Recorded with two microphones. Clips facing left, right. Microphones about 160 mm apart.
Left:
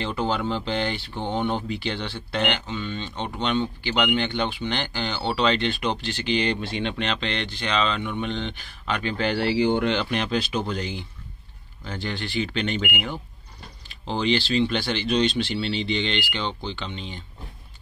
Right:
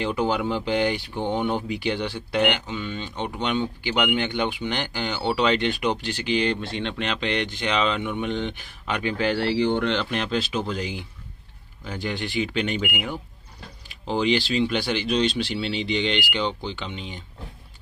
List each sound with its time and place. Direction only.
0.0 s speech: 15° right (ahead or behind); by 7.0 s 5° left (ahead or behind)
7.0 s speech: 10° right (ahead or behind)
9.2 s speech: centre (ahead or behind)
9.5 s speech: 10° left (ahead or behind); by 17.2 s 10° right (ahead or behind)